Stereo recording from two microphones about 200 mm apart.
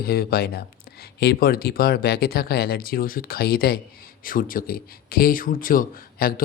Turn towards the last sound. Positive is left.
turn(degrees=45)  # may be behind; listen again after turning